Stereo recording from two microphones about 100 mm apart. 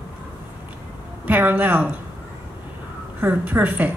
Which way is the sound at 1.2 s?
15° right (ahead or behind).